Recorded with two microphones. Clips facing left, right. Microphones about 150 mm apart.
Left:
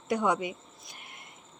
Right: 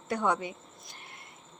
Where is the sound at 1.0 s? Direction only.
15° left (ahead or behind).